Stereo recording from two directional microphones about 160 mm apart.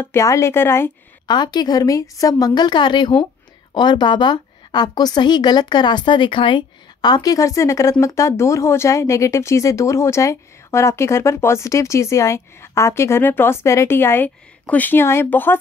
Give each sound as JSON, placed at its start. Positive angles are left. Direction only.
{"t": 0.0, "sound": "speech", "side_deg": 15}
{"t": 1.2, "sound": "a woman's voice", "side_deg": 25}